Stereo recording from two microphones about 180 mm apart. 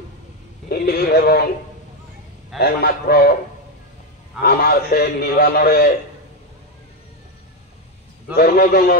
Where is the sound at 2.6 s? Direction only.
60° left (ahead or behind).